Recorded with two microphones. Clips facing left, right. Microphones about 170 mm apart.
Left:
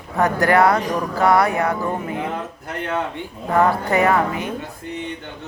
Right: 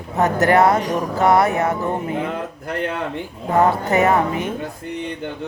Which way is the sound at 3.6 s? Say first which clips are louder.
Right 1 dB; 20° right (ahead or behind).